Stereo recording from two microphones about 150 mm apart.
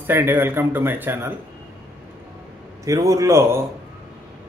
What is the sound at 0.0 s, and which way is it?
A man's voice, 15° right (ahead or behind).